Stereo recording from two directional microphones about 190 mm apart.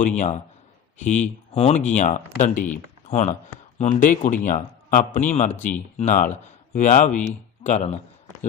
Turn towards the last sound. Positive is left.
turn(degrees=35)  # may be behind; listen again after turning